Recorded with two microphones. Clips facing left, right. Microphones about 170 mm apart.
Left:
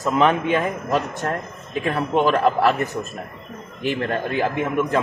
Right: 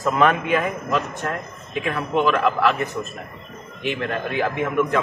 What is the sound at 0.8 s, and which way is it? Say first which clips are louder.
A man's voice: left 2 dB; 35° left (ahead or behind).